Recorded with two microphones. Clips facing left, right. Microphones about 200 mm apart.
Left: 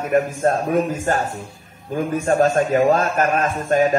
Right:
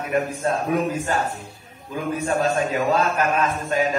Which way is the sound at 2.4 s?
45° left (ahead or behind).